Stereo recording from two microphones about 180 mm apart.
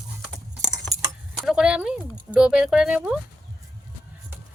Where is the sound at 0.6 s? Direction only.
20° right (ahead or behind).